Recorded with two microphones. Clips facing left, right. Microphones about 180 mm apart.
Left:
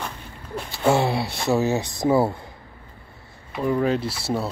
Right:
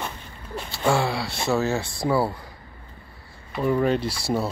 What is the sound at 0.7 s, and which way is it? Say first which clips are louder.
Speech: left 3 dB; 20° left (ahead or behind).